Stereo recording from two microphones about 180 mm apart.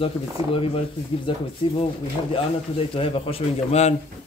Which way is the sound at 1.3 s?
25° left (ahead or behind).